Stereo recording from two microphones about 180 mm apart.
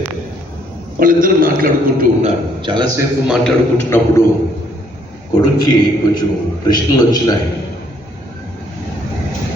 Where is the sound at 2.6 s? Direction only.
25° right (ahead or behind).